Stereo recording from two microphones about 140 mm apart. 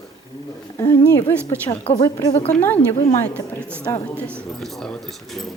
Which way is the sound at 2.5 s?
10° left (ahead or behind).